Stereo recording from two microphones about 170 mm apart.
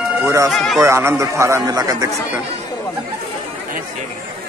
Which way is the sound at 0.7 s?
15° right (ahead or behind).